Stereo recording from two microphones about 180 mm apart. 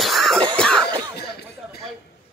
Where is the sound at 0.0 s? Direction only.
Centre (ahead or behind).